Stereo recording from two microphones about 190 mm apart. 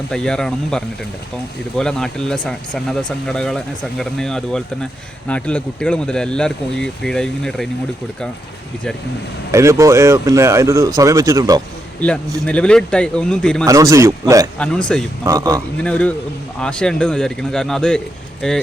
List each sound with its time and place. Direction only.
0.1 s speech: 5° left (ahead or behind)
9.5 s speech: 15° right (ahead or behind)
11.9 s a man's voice: 5° left (ahead or behind)
13.7 s speech: 15° right (ahead or behind)
14.6 s speech: 5° left (ahead or behind)
15.2 s speech: 15° right (ahead or behind)
15.8 s a man's voice: 5° left (ahead or behind)